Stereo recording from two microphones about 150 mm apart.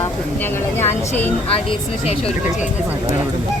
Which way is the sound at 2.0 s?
40° left (ahead or behind).